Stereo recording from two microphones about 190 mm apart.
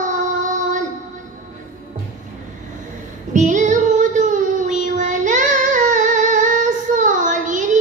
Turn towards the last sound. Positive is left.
turn(degrees=-40)  # may be behind; listen again after turning